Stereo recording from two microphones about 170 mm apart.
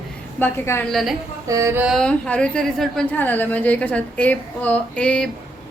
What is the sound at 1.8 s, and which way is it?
A woman's voice, centre (ahead or behind).